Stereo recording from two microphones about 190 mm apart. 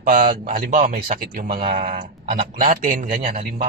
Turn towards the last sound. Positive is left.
turn(degrees=-45)  # may be behind; listen again after turning